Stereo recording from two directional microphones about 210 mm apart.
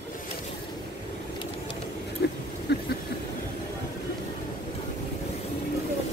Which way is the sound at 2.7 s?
55° left (ahead or behind).